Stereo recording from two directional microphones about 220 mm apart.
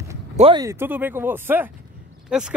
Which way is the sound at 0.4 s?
25° right (ahead or behind).